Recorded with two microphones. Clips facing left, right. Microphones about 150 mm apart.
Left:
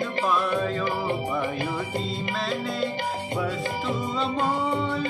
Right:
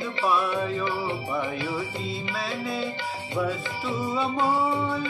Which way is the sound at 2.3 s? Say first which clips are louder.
Left 2 dB; 5° right (ahead or behind).